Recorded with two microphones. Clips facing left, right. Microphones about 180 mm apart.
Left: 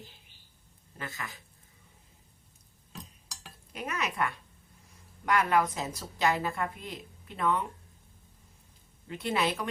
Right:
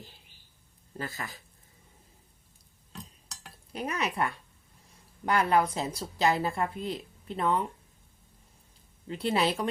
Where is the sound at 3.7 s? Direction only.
35° right (ahead or behind).